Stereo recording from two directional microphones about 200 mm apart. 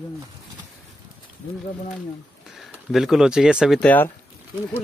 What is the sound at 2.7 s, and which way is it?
Speech, centre (ahead or behind).